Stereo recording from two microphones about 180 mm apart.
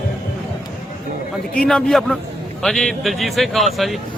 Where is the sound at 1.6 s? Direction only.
5° left (ahead or behind).